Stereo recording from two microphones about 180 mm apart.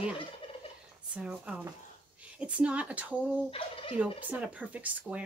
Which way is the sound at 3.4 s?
30° left (ahead or behind).